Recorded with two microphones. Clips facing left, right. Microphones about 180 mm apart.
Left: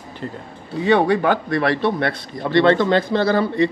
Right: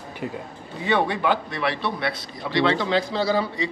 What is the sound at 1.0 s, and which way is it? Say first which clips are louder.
Speech: left 6 dB; 45° left (ahead or behind).